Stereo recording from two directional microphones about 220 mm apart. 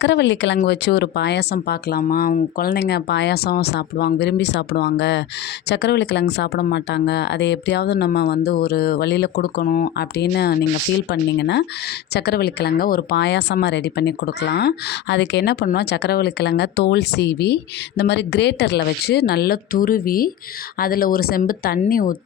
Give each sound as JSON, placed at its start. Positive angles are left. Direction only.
{"t": 0.0, "sound": "speech", "side_deg": 55}